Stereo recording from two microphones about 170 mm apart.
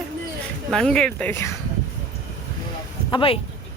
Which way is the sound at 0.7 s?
5° left (ahead or behind).